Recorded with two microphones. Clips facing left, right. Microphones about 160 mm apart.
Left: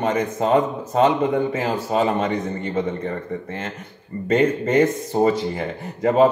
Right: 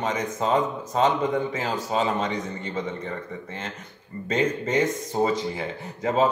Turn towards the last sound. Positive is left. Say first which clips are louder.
# left 6 dB
turn(degrees=55)  # may be behind; listen again after turning